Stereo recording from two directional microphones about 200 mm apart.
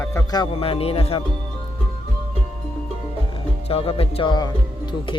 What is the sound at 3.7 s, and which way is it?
Speech, 30° left (ahead or behind).